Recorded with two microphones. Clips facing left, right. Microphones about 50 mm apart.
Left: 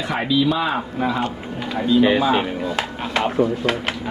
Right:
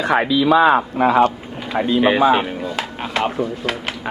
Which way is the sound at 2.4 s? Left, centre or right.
Centre.